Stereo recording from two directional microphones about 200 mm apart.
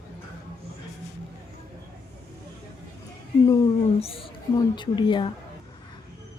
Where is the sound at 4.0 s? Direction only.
30° left (ahead or behind).